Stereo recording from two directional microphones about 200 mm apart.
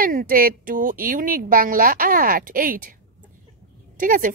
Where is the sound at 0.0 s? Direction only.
45° right (ahead or behind).